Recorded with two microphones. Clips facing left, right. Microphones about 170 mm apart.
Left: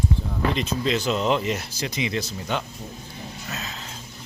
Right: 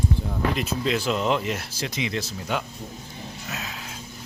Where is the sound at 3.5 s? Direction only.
10° right (ahead or behind).